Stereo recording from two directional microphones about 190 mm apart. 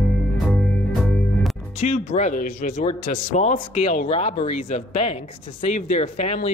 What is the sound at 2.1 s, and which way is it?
Speech, 40° left (ahead or behind).